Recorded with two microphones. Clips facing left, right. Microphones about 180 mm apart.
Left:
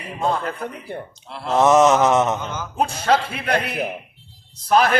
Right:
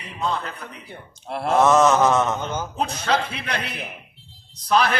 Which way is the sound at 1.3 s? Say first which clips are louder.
Right 4 dB; 55° right (ahead or behind).